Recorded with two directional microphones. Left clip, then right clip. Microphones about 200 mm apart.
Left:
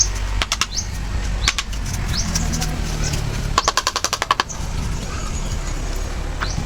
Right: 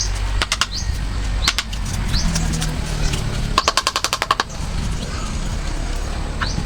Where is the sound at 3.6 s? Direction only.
10° right (ahead or behind).